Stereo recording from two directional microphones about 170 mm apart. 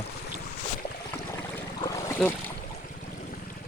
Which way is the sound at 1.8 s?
20° left (ahead or behind).